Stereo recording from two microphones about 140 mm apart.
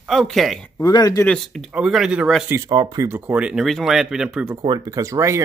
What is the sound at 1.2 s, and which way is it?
Speech, 5° left (ahead or behind).